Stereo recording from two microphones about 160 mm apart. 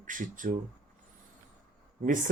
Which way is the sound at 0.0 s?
55° right (ahead or behind).